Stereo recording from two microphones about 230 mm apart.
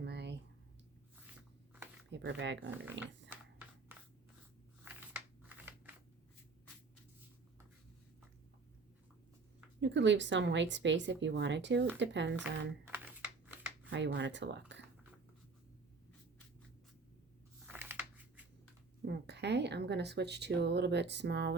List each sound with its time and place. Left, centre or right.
0.0 s a sound: right
2.0 s speech: right
5.4 s scissors: centre
9.8 s speech: right
12.4 s speech: centre
13.9 s speech: right
17.7 s a sound: centre
19.0 s speech: right